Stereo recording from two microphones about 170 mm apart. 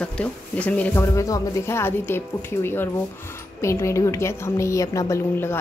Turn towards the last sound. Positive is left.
turn(degrees=15)  # may be behind; listen again after turning